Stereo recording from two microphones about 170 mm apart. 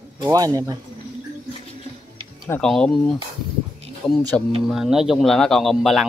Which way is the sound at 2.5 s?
5° left (ahead or behind).